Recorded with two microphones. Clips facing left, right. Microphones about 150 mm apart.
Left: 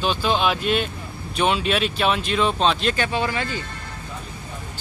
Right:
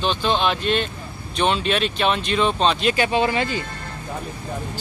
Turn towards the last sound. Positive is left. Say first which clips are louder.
# right 4 dB
turn(degrees=-20)  # may be behind; listen again after turning